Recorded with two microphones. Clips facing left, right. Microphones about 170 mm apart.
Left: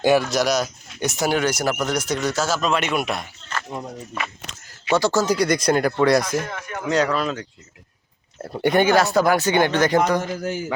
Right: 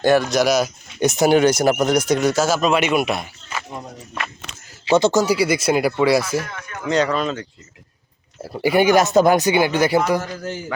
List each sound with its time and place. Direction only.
0.0 s speech: 10° left (ahead or behind)
1.0 s speech: 20° right (ahead or behind); by 4.3 s centre (ahead or behind)
4.9 s speech: 20° right (ahead or behind)
5.2 s speech: 5° right (ahead or behind)
10.2 s a man's voice: 15° left (ahead or behind)